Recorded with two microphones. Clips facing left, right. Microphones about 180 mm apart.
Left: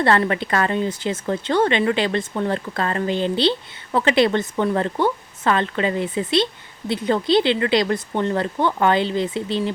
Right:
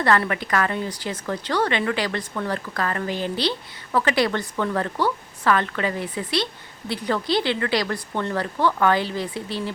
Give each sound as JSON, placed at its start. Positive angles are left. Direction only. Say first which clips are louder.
{"t": 0.0, "sound": "speech", "louder": "left 3 dB", "side_deg": 25}